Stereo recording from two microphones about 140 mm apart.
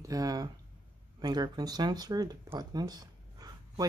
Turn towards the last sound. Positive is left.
turn(degrees=-30)  # may be behind; listen again after turning